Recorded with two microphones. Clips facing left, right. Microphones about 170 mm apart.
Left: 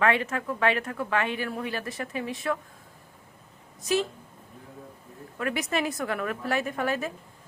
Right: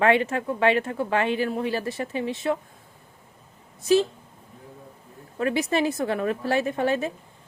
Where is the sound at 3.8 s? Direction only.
30° right (ahead or behind).